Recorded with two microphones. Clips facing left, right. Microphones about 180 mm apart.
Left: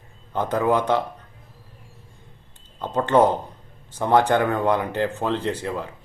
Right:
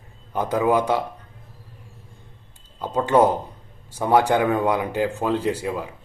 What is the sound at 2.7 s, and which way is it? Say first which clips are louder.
Speech: even; 10° right (ahead or behind).